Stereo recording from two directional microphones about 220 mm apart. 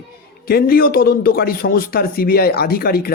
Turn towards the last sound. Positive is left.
turn(degrees=45)  # may be behind; listen again after turning